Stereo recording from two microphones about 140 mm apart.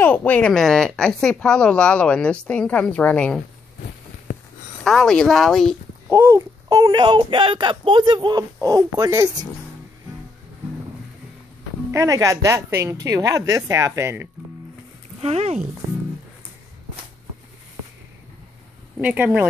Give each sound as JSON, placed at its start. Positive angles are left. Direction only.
{"t": 0.0, "sound": "a woman's voice", "side_deg": 10}
{"t": 4.8, "sound": "speech", "side_deg": 5}
{"t": 6.0, "sound": "a woman's voice", "side_deg": -20}
{"t": 11.9, "sound": "a woman's voice", "side_deg": -20}
{"t": 15.1, "sound": "speech", "side_deg": -50}
{"t": 18.9, "sound": "speech", "side_deg": -10}